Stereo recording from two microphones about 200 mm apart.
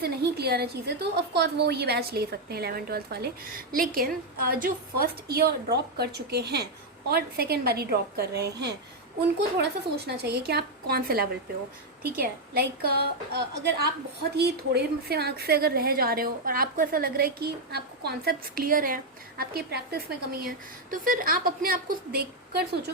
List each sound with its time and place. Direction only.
0.0 s a woman's voice: 55° right (ahead or behind)